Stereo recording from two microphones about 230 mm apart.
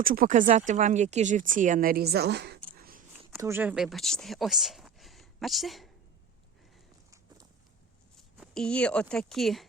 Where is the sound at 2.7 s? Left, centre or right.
Right.